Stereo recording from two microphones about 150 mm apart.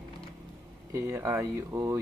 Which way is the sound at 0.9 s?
15° right (ahead or behind).